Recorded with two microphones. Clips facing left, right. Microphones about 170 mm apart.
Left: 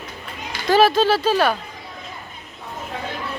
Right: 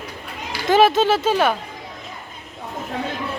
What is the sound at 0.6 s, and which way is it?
Speech, 20° right (ahead or behind).